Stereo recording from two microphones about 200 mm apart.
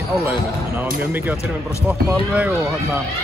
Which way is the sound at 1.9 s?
10° right (ahead or behind).